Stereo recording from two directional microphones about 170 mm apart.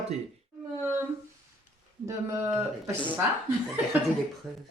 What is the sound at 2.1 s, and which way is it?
Speech, 15° right (ahead or behind).